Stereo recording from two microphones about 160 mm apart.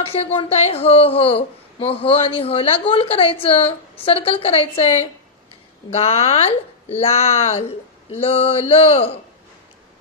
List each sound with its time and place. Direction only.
0.0 s a woman's voice: 40° left (ahead or behind)